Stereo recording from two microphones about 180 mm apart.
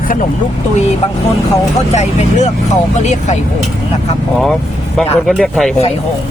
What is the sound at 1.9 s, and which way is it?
Speech, 40° left (ahead or behind).